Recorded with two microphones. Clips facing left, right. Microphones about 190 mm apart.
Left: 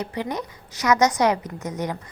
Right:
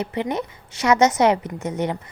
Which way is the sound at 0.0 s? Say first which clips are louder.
Right 3 dB; 25° right (ahead or behind).